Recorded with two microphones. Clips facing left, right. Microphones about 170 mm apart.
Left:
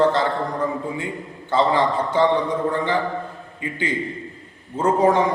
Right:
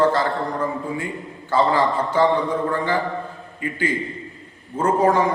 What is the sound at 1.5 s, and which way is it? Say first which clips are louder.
Speech: even; 20° left (ahead or behind).